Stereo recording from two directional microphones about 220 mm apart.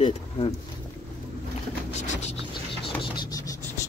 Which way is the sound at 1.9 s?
30° left (ahead or behind).